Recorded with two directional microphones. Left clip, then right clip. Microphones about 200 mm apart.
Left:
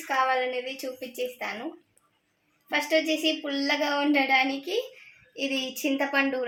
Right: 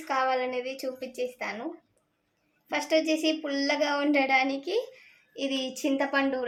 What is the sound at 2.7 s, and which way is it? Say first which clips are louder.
A woman's voice: left 1 dB; 15° right (ahead or behind).